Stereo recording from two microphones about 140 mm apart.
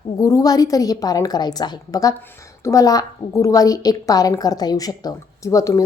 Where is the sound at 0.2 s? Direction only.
25° left (ahead or behind).